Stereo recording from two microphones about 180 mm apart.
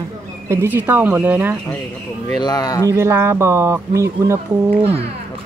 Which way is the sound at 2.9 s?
15° right (ahead or behind).